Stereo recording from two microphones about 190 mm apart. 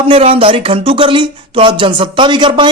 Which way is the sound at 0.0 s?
30° right (ahead or behind).